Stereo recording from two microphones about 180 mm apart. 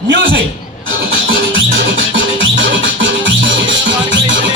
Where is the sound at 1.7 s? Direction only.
75° right (ahead or behind); by 3.9 s 90° right.